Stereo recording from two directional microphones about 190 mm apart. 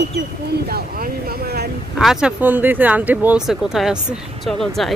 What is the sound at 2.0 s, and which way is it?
Speech, centre (ahead or behind).